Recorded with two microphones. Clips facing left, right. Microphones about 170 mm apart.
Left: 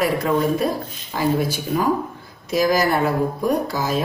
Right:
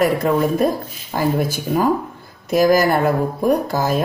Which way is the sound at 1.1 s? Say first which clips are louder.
Right 2 dB; 40° right (ahead or behind).